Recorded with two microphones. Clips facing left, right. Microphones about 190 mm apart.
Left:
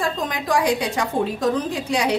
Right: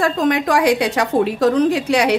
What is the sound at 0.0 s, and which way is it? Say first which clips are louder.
A woman's voice: right 8 dB; 70° right (ahead or behind).